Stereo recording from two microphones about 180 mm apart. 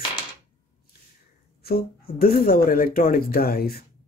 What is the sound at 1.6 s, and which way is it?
Speech, 60° left (ahead or behind).